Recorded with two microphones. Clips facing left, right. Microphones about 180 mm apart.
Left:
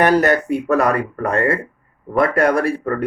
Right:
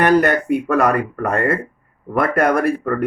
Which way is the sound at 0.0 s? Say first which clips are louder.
Even; 55° right (ahead or behind).